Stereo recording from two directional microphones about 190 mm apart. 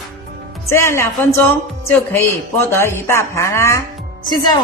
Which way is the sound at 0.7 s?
15° left (ahead or behind).